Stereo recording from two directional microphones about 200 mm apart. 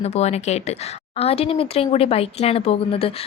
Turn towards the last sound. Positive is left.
turn(degrees=30)  # may be behind; listen again after turning